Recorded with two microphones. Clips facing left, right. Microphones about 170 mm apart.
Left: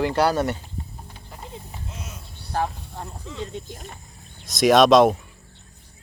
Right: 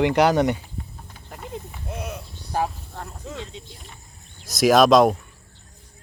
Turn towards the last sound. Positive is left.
turn(degrees=0)  # may be behind; listen again after turning